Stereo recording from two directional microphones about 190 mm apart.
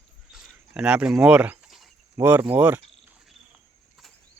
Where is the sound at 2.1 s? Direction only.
10° right (ahead or behind).